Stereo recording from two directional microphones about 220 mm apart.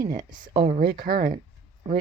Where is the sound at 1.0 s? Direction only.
45° right (ahead or behind).